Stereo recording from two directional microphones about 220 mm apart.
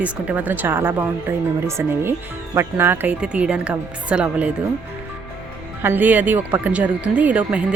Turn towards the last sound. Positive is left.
turn(degrees=-5)  # may be behind; listen again after turning